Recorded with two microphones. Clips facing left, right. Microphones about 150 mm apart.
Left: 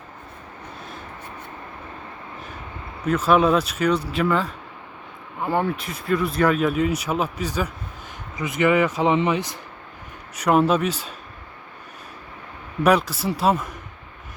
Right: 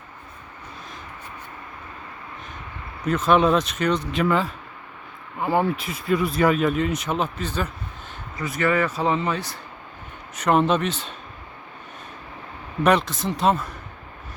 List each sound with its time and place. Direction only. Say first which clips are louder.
3.0 s speech: left 1 dB; 5° left (ahead or behind); by 6.6 s 10° right (ahead or behind)
6.6 s speech: left 1 dB; 5° left (ahead or behind)
10.4 s speech: left 1 dB; 5° left (ahead or behind)
12.8 s speech: left 1 dB; 5° left (ahead or behind)